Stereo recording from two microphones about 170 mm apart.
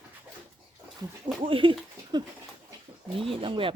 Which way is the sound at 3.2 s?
30° right (ahead or behind).